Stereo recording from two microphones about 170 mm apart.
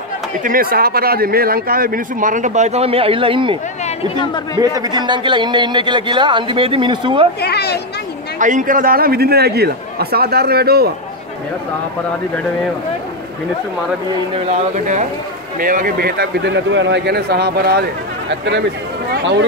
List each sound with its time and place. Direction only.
0.4 s speech: 55° right (ahead or behind); by 3.5 s 30° right (ahead or behind)
4.6 s a man's voice: 20° right (ahead or behind)
7.4 s a child's voice: 75° left (ahead or behind)
8.4 s a man's voice: 50° right (ahead or behind); by 10.9 s 65° right (ahead or behind)
15.6 s a man's voice: 55° right (ahead or behind)
18.3 s speech: 90° right
19.1 s a sound: 90° right